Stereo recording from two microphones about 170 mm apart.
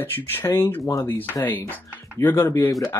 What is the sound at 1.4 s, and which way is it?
Speech, 10° left (ahead or behind).